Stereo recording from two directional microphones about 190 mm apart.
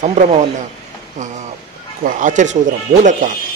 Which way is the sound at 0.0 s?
40° right (ahead or behind).